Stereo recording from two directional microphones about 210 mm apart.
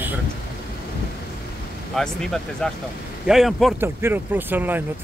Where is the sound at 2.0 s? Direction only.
5° left (ahead or behind).